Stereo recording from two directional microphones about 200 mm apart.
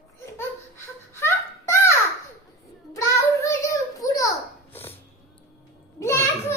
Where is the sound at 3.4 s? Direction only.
15° left (ahead or behind).